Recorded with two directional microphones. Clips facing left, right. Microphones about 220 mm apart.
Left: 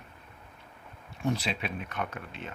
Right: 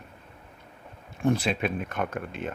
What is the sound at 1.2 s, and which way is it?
Speech, 50° right (ahead or behind).